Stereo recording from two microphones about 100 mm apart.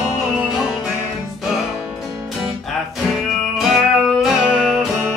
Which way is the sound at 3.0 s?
5° right (ahead or behind).